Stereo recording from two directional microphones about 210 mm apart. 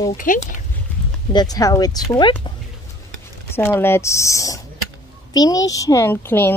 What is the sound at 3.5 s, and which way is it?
Speech, 10° left (ahead or behind).